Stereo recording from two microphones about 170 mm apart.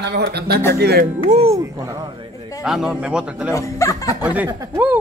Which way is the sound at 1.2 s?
35° right (ahead or behind).